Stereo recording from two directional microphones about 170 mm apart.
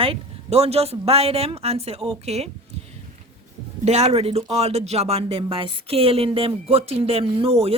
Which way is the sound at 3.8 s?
40° right (ahead or behind).